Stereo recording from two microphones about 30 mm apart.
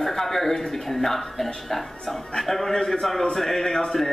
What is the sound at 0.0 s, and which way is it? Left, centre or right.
A man's voice, centre.